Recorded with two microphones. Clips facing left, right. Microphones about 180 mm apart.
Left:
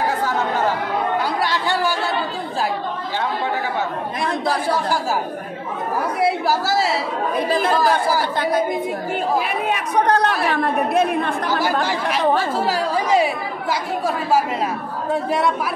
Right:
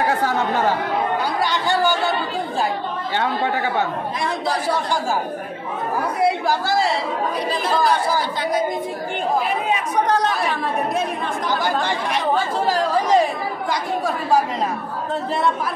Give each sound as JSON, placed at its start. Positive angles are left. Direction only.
{"t": 1.4, "sound": "chatter", "side_deg": 0}
{"t": 6.2, "sound": "speech", "side_deg": 5}
{"t": 7.3, "sound": "speech", "side_deg": 55}
{"t": 11.6, "sound": "speech", "side_deg": 5}